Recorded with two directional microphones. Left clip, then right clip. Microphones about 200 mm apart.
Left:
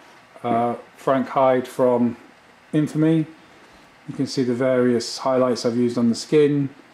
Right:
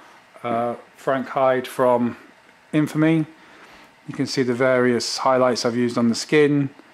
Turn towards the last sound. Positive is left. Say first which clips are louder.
# even
turn(degrees=-15)  # may be behind; listen again after turning